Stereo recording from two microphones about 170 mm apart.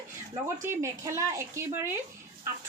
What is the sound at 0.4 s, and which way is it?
Speech, 15° right (ahead or behind).